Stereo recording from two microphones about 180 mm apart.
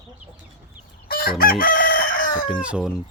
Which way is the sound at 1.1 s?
55° left (ahead or behind).